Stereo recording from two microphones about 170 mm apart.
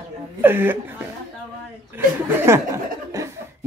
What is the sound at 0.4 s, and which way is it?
Speech, 10° right (ahead or behind).